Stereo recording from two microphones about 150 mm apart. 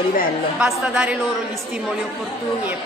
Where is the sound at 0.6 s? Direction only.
10° right (ahead or behind).